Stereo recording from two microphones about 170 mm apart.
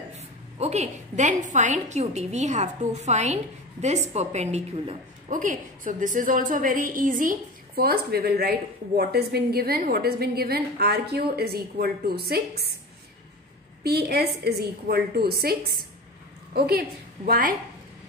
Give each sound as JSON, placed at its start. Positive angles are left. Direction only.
{"t": 0.6, "sound": "a woman's voice", "side_deg": -40}
{"t": 5.3, "sound": "a woman's voice", "side_deg": -50}
{"t": 13.8, "sound": "a woman's voice", "side_deg": -70}